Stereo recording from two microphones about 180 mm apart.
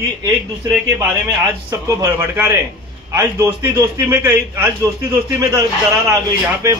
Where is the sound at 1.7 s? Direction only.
15° right (ahead or behind).